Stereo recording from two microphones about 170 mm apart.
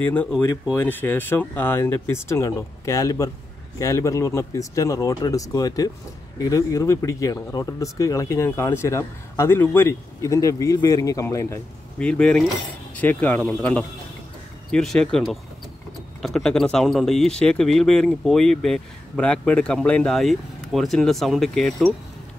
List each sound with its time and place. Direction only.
0.0 s speech: 10° left (ahead or behind)